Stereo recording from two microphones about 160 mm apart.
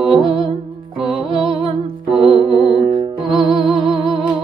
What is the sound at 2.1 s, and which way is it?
Music, 35° right (ahead or behind).